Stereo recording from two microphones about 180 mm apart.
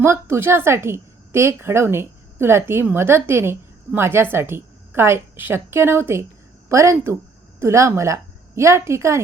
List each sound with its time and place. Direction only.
0.0 s a woman's voice: 15° right (ahead or behind)